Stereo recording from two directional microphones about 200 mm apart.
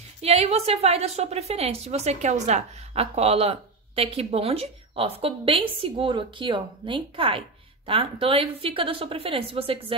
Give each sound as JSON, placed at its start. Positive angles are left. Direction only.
{"t": 0.2, "sound": "a woman's voice", "side_deg": -30}